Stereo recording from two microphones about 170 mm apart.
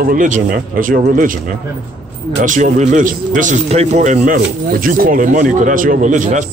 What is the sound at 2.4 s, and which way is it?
A man's voice, 50° right (ahead or behind).